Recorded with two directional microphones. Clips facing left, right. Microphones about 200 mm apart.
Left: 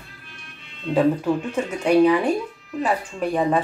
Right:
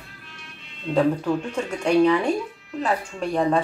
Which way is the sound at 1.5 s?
5° left (ahead or behind).